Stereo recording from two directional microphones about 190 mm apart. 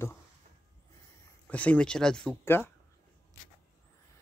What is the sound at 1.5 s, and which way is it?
Speech, 5° left (ahead or behind).